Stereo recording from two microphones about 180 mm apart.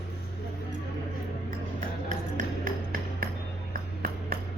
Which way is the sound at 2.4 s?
50° right (ahead or behind).